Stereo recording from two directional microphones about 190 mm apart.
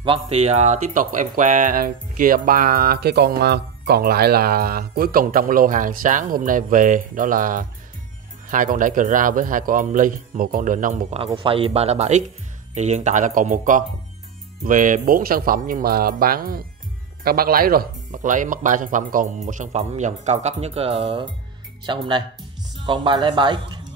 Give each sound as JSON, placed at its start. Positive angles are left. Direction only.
{"t": 0.0, "sound": "speech", "side_deg": -30}
{"t": 11.2, "sound": "speech", "side_deg": -25}